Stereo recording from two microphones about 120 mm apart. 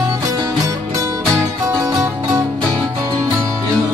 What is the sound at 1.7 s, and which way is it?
Music, 25° right (ahead or behind).